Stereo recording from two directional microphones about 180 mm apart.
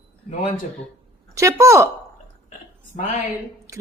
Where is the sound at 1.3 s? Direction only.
15° right (ahead or behind).